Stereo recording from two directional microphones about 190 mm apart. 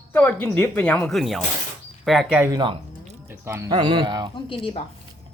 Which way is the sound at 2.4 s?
20° right (ahead or behind).